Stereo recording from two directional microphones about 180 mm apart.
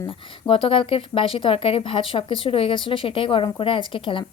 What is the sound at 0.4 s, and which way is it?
A woman's voice, 30° left (ahead or behind).